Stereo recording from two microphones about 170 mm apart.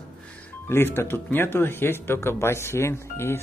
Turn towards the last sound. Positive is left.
turn(degrees=15)  # may be behind; listen again after turning